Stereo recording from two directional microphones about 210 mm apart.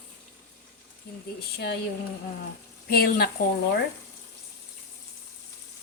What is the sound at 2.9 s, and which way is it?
Speech, 50° left (ahead or behind).